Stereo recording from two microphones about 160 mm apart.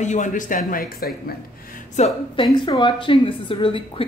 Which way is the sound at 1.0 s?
65° left (ahead or behind).